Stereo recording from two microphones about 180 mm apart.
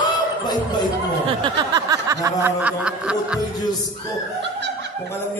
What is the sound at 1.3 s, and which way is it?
Speech, 20° right (ahead or behind).